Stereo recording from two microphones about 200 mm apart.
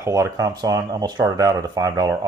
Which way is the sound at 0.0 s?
15° right (ahead or behind).